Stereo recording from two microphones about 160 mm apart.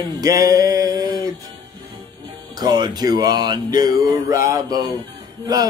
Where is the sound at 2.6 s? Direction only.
25° right (ahead or behind).